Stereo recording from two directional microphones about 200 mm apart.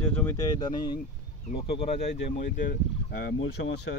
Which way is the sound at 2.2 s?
45° left (ahead or behind).